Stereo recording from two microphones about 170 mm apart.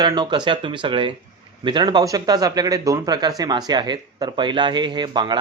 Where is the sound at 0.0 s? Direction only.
25° right (ahead or behind).